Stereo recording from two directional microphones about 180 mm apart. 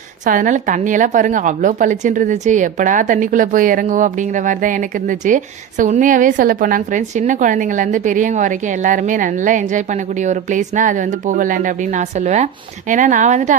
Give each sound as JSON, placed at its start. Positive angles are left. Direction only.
{"t": 0.3, "sound": "a woman's voice", "side_deg": -45}